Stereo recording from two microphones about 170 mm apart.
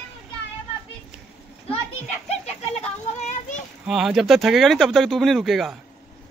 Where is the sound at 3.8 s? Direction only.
5° right (ahead or behind).